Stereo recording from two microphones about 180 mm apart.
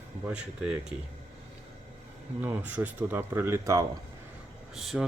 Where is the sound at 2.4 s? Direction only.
10° right (ahead or behind).